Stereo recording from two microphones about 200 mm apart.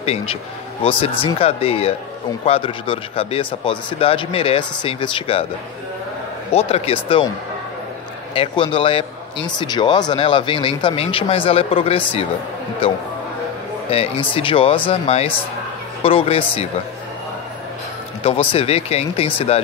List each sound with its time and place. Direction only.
0.0 s a man's voice: 30° left (ahead or behind)
6.5 s a man's voice: 30° left (ahead or behind)
8.4 s a man's voice: 25° left (ahead or behind)
18.2 s a man's voice: 30° left (ahead or behind)